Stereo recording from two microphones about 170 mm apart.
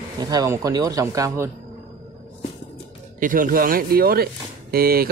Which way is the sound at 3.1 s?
55° right (ahead or behind).